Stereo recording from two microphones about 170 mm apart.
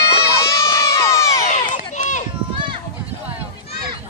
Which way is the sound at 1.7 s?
45° left (ahead or behind).